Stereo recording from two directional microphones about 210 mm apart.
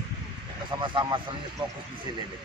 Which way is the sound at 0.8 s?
25° right (ahead or behind).